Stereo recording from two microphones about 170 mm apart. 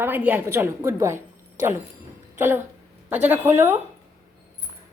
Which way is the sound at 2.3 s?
15° right (ahead or behind).